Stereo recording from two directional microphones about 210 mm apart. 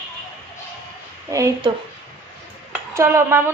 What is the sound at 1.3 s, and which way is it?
Speech, 15° right (ahead or behind).